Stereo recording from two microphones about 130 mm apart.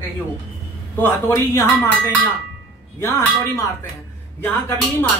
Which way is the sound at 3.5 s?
20° left (ahead or behind).